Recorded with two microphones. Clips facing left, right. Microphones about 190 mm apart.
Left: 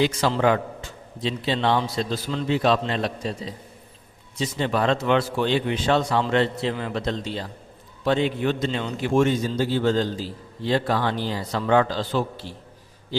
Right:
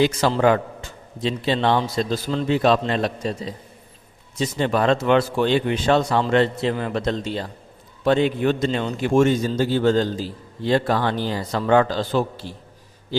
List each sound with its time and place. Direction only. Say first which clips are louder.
0.0 s a man's voice: right 3 dB; 45° right (ahead or behind)
4.4 s a man's voice: right 3 dB; 50° right (ahead or behind)